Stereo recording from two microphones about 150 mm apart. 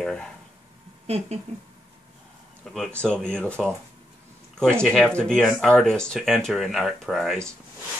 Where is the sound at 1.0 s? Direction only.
45° right (ahead or behind).